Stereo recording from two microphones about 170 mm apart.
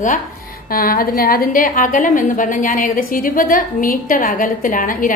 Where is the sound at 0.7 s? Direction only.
60° left (ahead or behind).